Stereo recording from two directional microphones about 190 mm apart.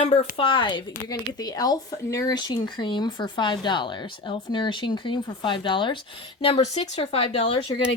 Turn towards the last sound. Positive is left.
turn(degrees=30)  # may be behind; listen again after turning